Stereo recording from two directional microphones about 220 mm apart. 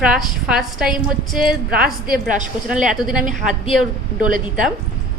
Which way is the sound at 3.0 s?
Centre (ahead or behind).